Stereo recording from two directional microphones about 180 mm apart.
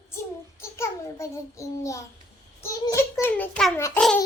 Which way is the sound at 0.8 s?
15° left (ahead or behind).